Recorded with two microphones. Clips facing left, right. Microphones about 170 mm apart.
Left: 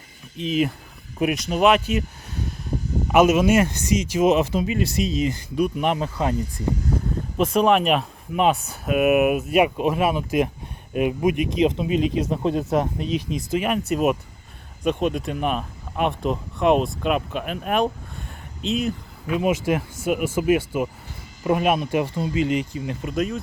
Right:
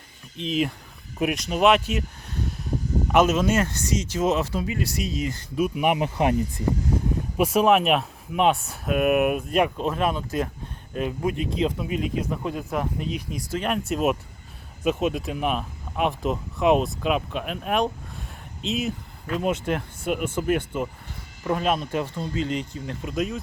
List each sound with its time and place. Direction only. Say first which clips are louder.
0.3 s speech: left 3 dB; centre (ahead or behind)
3.1 s speech: left 4 dB; 10° left (ahead or behind)
5.5 s speech: even; 5° right (ahead or behind)
7.3 s speech: left 1 dB; 5° right (ahead or behind); by 13.1 s 20° left (ahead or behind)
13.6 s speech: left 2 dB; centre (ahead or behind)